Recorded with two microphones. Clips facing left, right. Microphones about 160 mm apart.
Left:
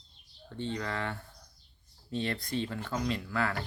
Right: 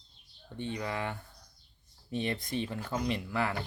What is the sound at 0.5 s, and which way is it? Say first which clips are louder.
Speech: even; 15° right (ahead or behind).